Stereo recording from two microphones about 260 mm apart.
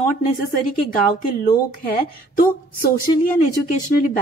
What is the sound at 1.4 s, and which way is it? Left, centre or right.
A woman's voice, left.